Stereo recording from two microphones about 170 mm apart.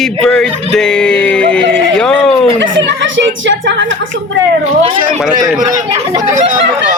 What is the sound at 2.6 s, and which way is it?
A woman's voice, 90° right.